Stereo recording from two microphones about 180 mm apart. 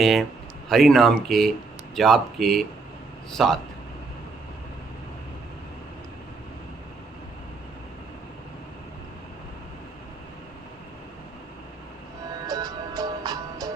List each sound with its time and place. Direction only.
0.0 s speech: centre (ahead or behind)
12.5 s music: 20° right (ahead or behind)